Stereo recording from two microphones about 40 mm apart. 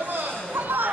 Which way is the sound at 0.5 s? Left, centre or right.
Right.